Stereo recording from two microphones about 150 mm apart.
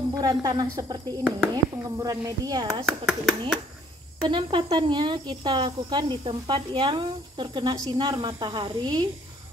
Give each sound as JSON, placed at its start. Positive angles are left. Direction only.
{"t": 0.1, "sound": "speech", "side_deg": -25}
{"t": 2.9, "sound": "speech", "side_deg": 0}
{"t": 4.2, "sound": "speech", "side_deg": -35}